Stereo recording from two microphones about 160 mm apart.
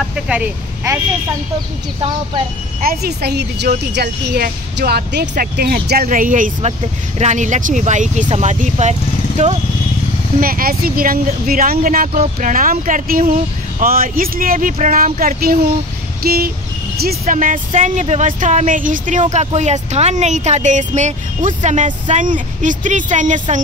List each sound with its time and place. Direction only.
0.1 s speech: 10° right (ahead or behind)
2.8 s speech: 75° right (ahead or behind)
5.3 s speech: 70° right (ahead or behind); by 8.9 s 45° right (ahead or behind)
10.4 s speech: 65° right (ahead or behind)
16.2 s a sound: 75° right (ahead or behind)
17.3 s speech: 55° right (ahead or behind)